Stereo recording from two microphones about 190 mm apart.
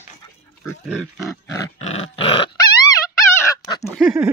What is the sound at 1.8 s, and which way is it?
Dog, 30° left (ahead or behind).